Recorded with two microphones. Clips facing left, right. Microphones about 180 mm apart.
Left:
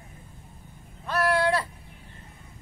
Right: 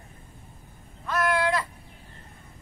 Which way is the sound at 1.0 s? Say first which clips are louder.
Left 1 dB; 35° left (ahead or behind).